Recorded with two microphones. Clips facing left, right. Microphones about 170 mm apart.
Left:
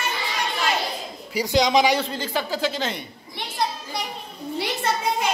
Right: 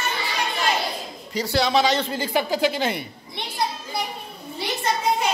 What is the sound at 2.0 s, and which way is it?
A woman's voice, 10° right (ahead or behind).